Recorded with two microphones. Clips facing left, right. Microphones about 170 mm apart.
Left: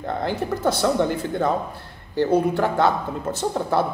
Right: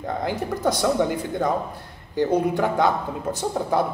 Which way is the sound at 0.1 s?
15° right (ahead or behind).